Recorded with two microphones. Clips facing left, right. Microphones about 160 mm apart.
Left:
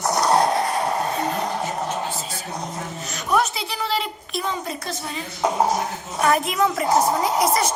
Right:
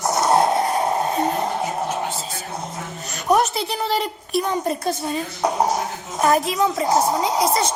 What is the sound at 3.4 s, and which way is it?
A woman's voice, 50° right (ahead or behind).